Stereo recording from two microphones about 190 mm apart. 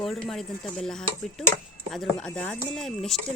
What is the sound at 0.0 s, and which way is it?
Speech, centre (ahead or behind).